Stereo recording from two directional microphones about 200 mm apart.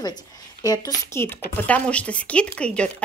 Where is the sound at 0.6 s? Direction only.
15° left (ahead or behind).